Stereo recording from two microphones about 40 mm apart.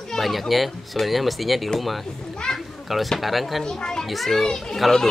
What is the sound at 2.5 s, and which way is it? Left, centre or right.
Children playing, centre.